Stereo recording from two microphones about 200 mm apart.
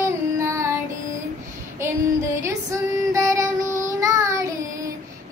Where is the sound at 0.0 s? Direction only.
15° right (ahead or behind).